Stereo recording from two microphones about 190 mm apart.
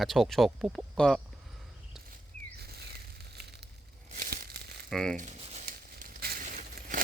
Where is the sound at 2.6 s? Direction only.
55° right (ahead or behind).